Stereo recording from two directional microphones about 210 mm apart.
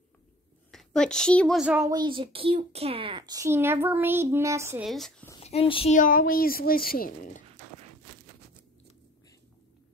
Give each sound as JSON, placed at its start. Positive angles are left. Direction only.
{"t": 0.7, "sound": "a woman's voice", "side_deg": 5}
{"t": 1.9, "sound": "speech", "side_deg": -20}
{"t": 4.8, "sound": "speech", "side_deg": 0}
{"t": 5.4, "sound": "speech", "side_deg": 30}
{"t": 5.9, "sound": "a woman's voice", "side_deg": 40}